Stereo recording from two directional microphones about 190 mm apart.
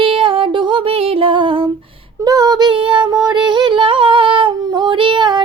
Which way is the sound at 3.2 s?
25° right (ahead or behind).